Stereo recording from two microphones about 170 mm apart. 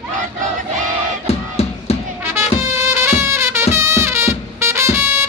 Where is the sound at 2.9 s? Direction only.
15° right (ahead or behind).